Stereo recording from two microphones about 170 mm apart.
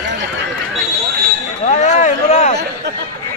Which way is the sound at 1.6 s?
45° left (ahead or behind).